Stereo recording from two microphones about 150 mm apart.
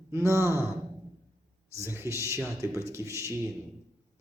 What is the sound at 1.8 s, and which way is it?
A man's voice, 15° right (ahead or behind).